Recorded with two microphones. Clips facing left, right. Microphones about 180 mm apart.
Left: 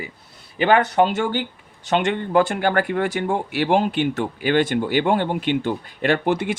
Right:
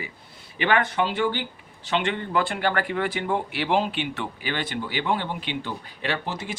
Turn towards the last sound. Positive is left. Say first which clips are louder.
# left 10 dB
turn(degrees=55)  # may be behind; listen again after turning